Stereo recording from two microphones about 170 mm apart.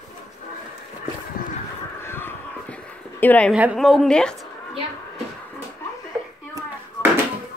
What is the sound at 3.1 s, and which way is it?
Speech, 10° left (ahead or behind).